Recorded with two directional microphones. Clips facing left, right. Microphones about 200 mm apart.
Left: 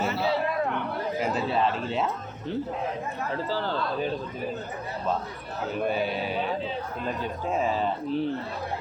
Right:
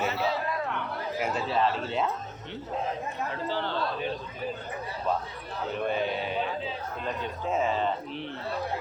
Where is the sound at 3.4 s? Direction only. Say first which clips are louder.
Even; 40° left (ahead or behind).